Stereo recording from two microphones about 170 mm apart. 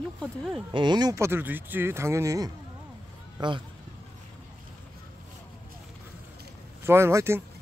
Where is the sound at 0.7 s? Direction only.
25° right (ahead or behind).